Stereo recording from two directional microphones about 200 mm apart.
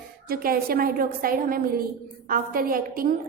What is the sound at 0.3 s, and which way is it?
A woman's voice, 50° right (ahead or behind).